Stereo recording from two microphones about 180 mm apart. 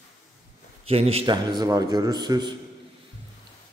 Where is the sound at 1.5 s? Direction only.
20° right (ahead or behind).